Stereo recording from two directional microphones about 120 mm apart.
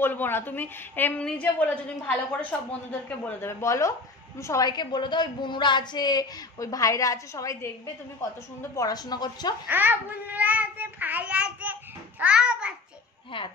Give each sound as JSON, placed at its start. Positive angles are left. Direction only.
{"t": 0.0, "sound": "a woman's voice", "side_deg": 15}
{"t": 9.7, "sound": "child singing", "side_deg": -15}